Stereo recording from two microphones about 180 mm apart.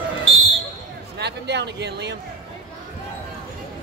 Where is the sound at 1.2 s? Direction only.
70° right (ahead or behind).